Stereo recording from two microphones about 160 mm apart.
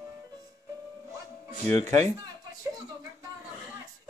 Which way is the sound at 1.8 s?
45° right (ahead or behind).